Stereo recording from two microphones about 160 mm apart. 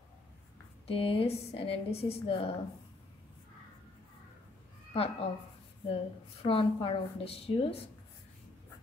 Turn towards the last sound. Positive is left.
turn(degrees=40)  # may be behind; listen again after turning